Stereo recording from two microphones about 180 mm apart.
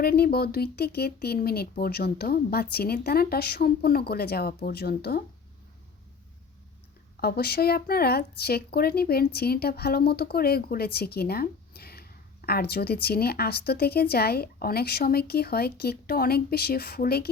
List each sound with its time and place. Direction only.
0.0 s speech: 60° left (ahead or behind)
7.2 s speech: 60° left (ahead or behind)